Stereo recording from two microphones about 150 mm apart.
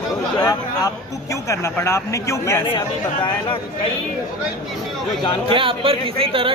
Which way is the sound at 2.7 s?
35° left (ahead or behind).